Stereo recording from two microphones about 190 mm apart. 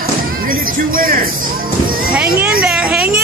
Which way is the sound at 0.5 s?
50° right (ahead or behind).